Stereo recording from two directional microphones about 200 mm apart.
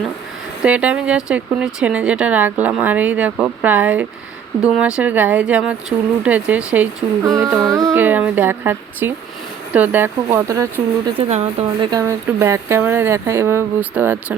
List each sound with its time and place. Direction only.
0.6 s speech: 5° right (ahead or behind)
7.5 s music: centre (ahead or behind)
7.9 s speech: 10° right (ahead or behind)
11.2 s a woman's voice: 30° right (ahead or behind)
11.9 s speech: 15° right (ahead or behind)